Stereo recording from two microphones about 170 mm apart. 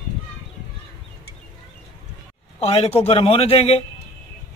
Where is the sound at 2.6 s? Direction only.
35° left (ahead or behind).